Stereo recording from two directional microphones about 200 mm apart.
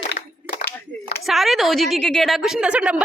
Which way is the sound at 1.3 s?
Centre (ahead or behind).